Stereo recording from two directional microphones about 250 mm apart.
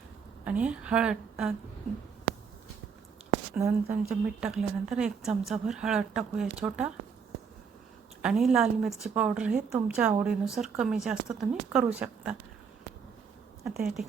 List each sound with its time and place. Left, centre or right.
0.4 s speech: centre
3.5 s speech: centre
8.2 s speech: centre
13.7 s speech: centre